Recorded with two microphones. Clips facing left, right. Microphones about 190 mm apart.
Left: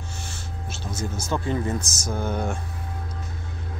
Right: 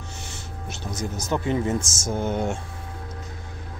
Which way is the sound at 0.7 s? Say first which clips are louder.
Right 1 dB; 15° right (ahead or behind).